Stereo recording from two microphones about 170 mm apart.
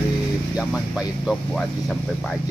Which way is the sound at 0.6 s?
5° right (ahead or behind).